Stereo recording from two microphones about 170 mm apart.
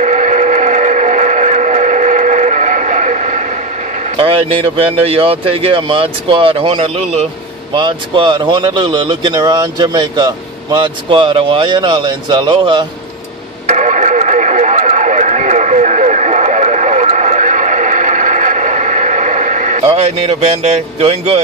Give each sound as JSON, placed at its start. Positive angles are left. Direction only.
{"t": 0.0, "sound": "train", "side_deg": -45}
{"t": 4.2, "sound": "speech", "side_deg": -35}
{"t": 13.7, "sound": "radio", "side_deg": -45}